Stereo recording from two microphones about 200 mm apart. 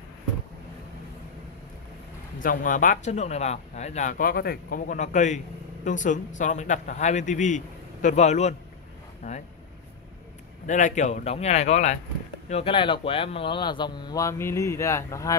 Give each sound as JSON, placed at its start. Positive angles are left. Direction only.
{"t": 2.4, "sound": "speech", "side_deg": 40}
{"t": 10.7, "sound": "speech", "side_deg": 40}